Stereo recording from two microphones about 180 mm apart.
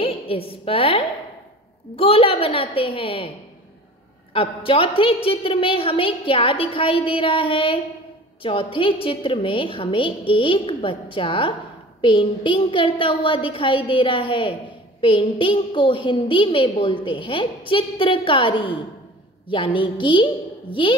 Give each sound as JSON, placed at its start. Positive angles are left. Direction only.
{"t": 0.0, "sound": "a woman's voice", "side_deg": 30}
{"t": 4.3, "sound": "a woman's voice", "side_deg": 30}